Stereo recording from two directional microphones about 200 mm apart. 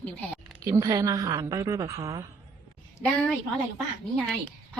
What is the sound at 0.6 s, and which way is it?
A woman's voice, 15° right (ahead or behind).